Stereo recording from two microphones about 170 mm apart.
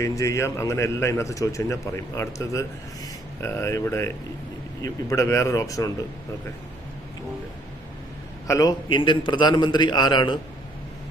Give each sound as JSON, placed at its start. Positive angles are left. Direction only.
{"t": 0.0, "sound": "a man's voice", "side_deg": 20}
{"t": 8.4, "sound": "a man's voice", "side_deg": 20}